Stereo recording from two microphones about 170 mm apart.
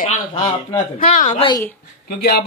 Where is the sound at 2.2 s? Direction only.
70° left (ahead or behind).